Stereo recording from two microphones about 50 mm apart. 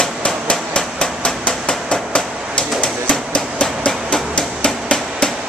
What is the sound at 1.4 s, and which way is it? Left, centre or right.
Hammer, left.